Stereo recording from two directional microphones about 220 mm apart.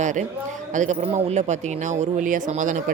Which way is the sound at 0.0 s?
35° right (ahead or behind).